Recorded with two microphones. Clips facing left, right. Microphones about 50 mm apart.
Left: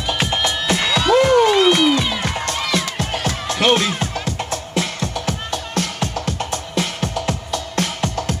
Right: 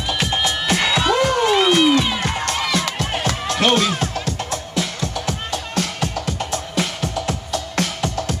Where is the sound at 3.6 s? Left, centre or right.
Left.